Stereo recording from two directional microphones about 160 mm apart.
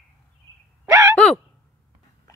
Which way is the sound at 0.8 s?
15° right (ahead or behind).